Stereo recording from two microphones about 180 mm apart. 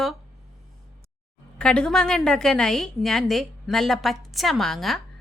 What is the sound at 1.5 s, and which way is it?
A woman's voice, 5° left (ahead or behind).